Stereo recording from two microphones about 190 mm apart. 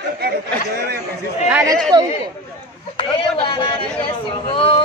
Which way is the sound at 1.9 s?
25° right (ahead or behind).